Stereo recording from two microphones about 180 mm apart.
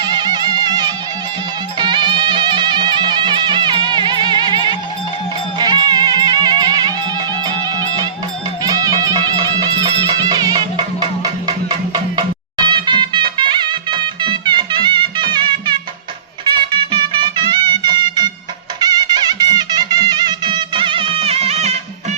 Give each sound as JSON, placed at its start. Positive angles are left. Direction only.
{"t": 0.0, "sound": "music", "side_deg": -25}
{"t": 8.6, "sound": "music", "side_deg": -20}
{"t": 12.6, "sound": "music", "side_deg": -25}